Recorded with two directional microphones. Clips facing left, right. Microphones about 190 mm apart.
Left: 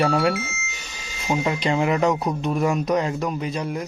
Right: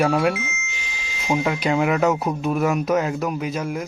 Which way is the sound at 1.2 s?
Centre (ahead or behind).